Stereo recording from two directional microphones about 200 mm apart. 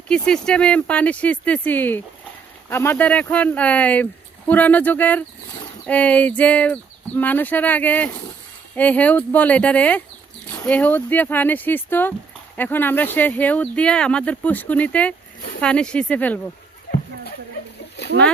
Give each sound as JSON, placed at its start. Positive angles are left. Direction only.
{"t": 0.1, "sound": "speech", "side_deg": 5}
{"t": 18.0, "sound": "rowboat", "side_deg": 55}